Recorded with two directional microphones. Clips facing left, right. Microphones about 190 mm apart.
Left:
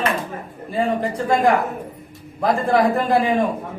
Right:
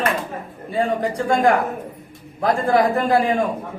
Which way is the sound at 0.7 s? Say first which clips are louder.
Even; centre (ahead or behind).